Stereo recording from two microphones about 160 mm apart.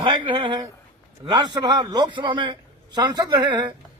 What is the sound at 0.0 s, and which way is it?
A man's voice, 30° right (ahead or behind).